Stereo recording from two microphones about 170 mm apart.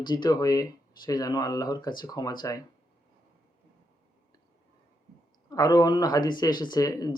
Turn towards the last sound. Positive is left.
turn(degrees=20)  # may be behind; listen again after turning